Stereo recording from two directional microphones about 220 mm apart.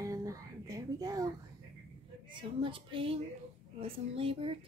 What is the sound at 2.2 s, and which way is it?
Speech, 25° right (ahead or behind).